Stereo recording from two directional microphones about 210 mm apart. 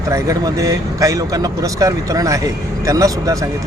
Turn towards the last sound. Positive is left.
turn(degrees=-15)  # may be behind; listen again after turning